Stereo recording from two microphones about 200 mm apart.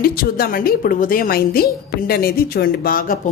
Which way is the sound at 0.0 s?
50° left (ahead or behind).